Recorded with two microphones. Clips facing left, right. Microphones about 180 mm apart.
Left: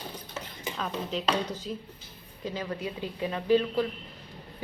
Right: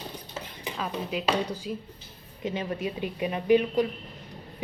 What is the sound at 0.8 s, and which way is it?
Speech, 10° right (ahead or behind).